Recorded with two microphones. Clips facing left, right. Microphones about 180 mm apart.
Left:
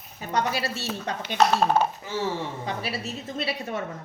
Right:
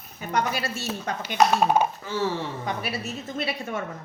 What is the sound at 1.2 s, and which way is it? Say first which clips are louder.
Speech: right 1 dB; 10° right (ahead or behind).